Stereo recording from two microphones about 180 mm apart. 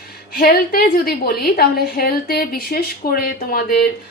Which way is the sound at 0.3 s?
55° left (ahead or behind).